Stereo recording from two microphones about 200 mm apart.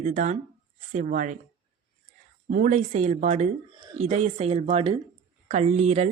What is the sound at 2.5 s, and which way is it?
Speech, 35° right (ahead or behind).